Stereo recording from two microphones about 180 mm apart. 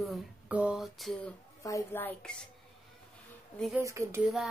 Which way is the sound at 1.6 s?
15° left (ahead or behind).